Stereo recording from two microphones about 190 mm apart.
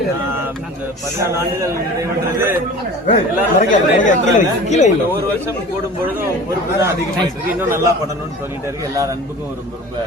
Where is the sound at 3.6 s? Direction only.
40° left (ahead or behind).